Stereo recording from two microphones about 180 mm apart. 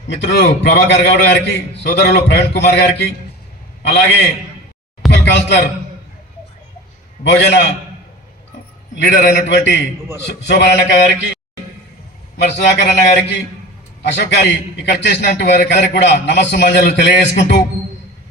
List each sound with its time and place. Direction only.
0.1 s a man's voice: 70° left (ahead or behind)
7.3 s a man's voice: 70° left (ahead or behind)
9.6 s a man's voice: 75° left (ahead or behind)
12.4 s a man's voice: 70° left (ahead or behind)